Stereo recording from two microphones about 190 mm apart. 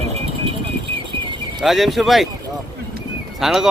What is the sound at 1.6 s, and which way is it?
Speech, centre (ahead or behind).